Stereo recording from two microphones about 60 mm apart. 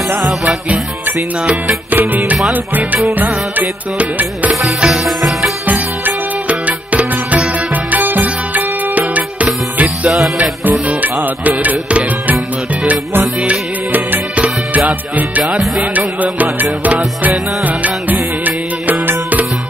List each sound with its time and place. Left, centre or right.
0.2 s music: centre
1.4 s music: centre
1.9 s music: right
4.7 s music: centre
5.7 s music: right
13.5 s music: right